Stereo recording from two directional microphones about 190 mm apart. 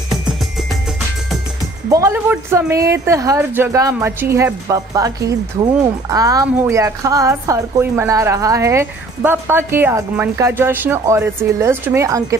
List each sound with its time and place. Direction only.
1.9 s a woman's voice: 15° right (ahead or behind)